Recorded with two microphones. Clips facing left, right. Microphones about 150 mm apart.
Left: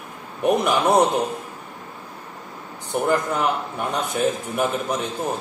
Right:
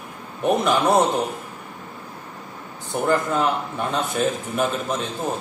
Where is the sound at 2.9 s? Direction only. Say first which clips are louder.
Even; 15° left (ahead or behind).